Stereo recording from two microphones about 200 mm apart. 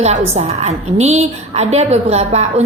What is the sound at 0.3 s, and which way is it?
A woman's voice, 30° right (ahead or behind).